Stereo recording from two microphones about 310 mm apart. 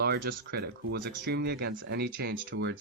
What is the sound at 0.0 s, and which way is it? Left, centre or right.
Speech, right.